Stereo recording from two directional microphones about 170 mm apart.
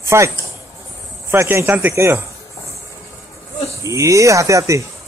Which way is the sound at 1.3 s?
15° right (ahead or behind).